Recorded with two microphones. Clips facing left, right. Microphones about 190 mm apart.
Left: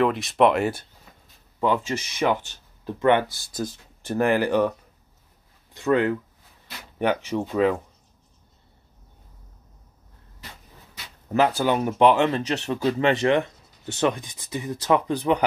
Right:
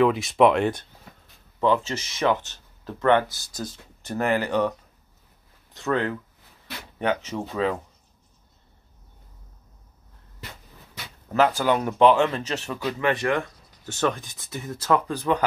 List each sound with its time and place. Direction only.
0.0 s speech: centre (ahead or behind)
5.9 s speech: 10° left (ahead or behind)
7.2 s speech: 15° left (ahead or behind)
11.3 s speech: 15° left (ahead or behind)